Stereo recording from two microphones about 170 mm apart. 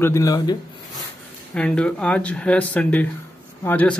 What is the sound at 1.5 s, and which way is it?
Speech, 5° left (ahead or behind).